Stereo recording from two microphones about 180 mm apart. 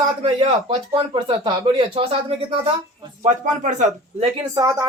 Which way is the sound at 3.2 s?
40° right (ahead or behind).